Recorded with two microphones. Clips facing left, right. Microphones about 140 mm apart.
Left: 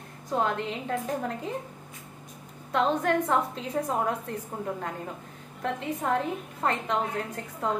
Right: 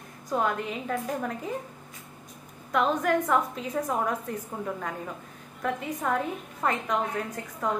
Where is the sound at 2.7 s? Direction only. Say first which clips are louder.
Even; 30° left (ahead or behind).